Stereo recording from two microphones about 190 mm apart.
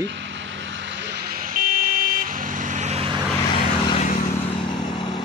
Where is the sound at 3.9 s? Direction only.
40° left (ahead or behind).